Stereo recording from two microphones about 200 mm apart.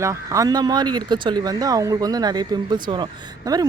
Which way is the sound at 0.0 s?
15° right (ahead or behind).